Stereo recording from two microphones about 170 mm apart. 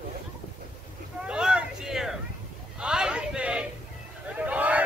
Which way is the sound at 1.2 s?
5° right (ahead or behind).